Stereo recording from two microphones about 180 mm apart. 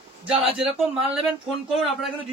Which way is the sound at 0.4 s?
30° right (ahead or behind).